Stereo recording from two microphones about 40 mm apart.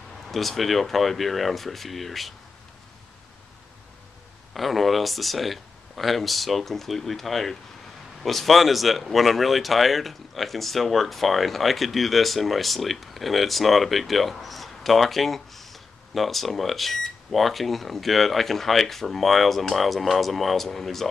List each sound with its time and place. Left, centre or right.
0.3 s speech: centre
4.6 s speech: centre